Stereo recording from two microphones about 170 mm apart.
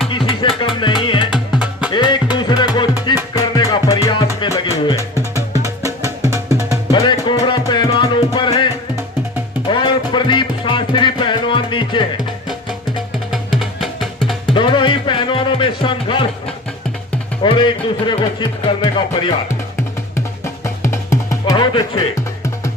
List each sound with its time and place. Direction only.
0.1 s music: 30° left (ahead or behind)
1.3 s music: 5° right (ahead or behind)
1.9 s music: 25° left (ahead or behind)
5.6 s music: 20° right (ahead or behind)
6.9 s music: 25° left (ahead or behind)
13.3 s music: centre (ahead or behind)
14.4 s music: 30° left (ahead or behind)
17.4 s music: 30° left (ahead or behind)
20.1 s music: 15° left (ahead or behind)